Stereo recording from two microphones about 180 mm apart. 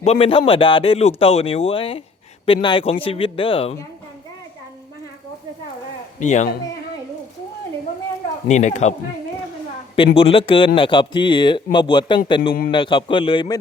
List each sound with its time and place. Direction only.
0.0 s a man's voice: 35° left (ahead or behind)
6.1 s a man's voice: 40° left (ahead or behind)
8.4 s a man's voice: 40° left (ahead or behind)
10.2 s a man's voice: 30° left (ahead or behind)